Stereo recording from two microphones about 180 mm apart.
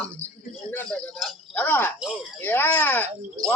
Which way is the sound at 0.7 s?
Centre (ahead or behind).